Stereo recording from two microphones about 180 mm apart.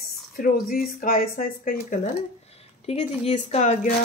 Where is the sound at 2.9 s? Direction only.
40° left (ahead or behind).